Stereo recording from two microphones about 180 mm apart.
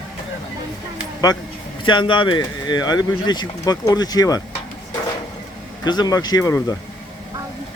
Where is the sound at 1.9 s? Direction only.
25° left (ahead or behind).